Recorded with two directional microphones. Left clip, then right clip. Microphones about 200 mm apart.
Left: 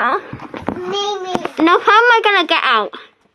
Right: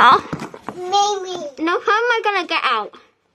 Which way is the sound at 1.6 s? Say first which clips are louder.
Left 7 dB; 40° left (ahead or behind).